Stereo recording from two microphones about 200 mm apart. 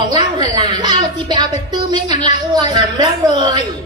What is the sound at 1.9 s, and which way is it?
A woman's voice, 20° right (ahead or behind).